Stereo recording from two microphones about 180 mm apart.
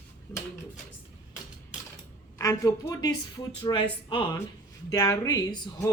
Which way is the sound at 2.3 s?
15° left (ahead or behind).